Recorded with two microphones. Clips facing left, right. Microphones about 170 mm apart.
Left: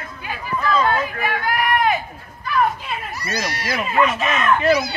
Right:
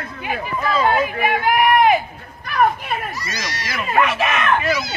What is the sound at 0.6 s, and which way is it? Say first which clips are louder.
Run: right 1 dB; 20° right (ahead or behind).